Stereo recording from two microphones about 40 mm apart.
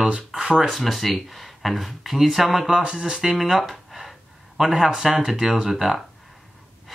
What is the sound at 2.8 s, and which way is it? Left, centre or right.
Speech, right.